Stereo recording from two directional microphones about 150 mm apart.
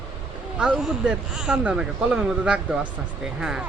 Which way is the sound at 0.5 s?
5° right (ahead or behind).